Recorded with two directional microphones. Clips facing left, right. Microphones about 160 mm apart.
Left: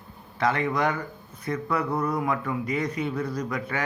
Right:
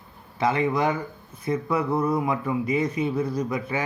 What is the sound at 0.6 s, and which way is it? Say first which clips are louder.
A man's voice: right 2 dB; 25° right (ahead or behind).